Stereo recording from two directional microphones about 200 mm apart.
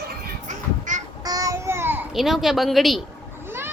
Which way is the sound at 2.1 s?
Centre (ahead or behind).